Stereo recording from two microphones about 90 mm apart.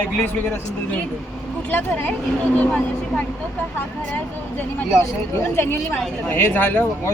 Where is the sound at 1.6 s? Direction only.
15° left (ahead or behind).